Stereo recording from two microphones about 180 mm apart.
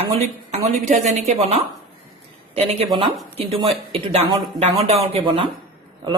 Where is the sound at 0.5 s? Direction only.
40° right (ahead or behind).